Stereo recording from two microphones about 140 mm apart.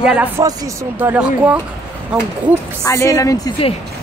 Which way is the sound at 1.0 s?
10° right (ahead or behind).